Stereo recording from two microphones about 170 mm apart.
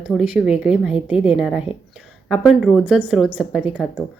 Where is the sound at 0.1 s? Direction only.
5° right (ahead or behind).